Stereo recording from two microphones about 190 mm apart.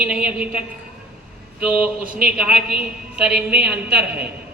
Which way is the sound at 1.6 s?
5° right (ahead or behind).